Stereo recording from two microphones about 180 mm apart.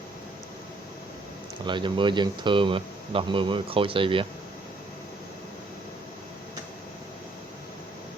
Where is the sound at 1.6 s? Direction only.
25° right (ahead or behind).